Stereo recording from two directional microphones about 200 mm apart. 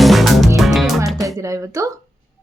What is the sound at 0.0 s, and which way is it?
Music, centre (ahead or behind).